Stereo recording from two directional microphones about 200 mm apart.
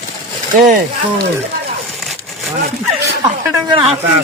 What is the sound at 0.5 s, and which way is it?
Speech, 45° right (ahead or behind).